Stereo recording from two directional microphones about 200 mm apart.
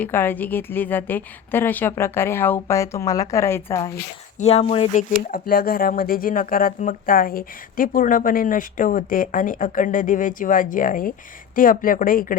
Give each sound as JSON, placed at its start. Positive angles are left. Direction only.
{"t": 0.0, "sound": "a woman's voice", "side_deg": 10}
{"t": 4.4, "sound": "speech", "side_deg": 30}
{"t": 5.3, "sound": "speech", "side_deg": 45}